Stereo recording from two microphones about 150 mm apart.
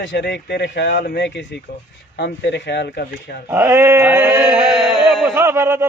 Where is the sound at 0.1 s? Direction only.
90° left.